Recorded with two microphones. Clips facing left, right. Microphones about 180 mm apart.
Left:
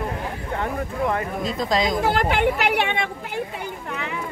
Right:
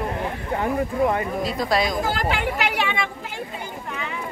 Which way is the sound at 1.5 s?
20° left (ahead or behind).